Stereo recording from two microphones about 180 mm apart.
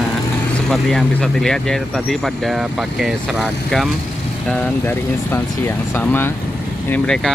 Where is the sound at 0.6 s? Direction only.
Centre (ahead or behind).